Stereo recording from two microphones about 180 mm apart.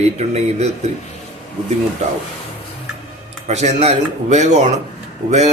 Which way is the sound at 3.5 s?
40° right (ahead or behind).